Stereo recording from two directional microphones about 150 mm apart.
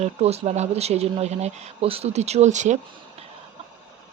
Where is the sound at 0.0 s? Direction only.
45° right (ahead or behind).